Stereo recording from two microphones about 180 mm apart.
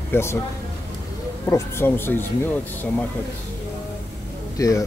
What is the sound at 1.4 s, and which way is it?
Speech, 15° left (ahead or behind).